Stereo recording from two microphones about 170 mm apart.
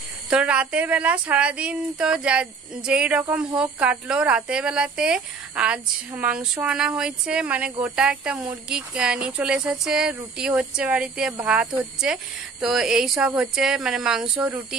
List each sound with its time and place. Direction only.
0.3 s speech: 5° right (ahead or behind)